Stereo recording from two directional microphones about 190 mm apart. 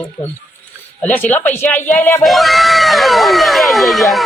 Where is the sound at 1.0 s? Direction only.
10° left (ahead or behind).